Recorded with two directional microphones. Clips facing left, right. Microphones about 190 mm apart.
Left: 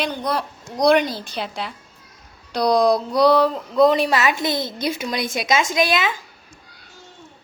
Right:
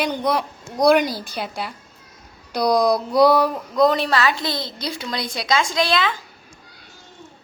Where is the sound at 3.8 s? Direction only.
10° left (ahead or behind).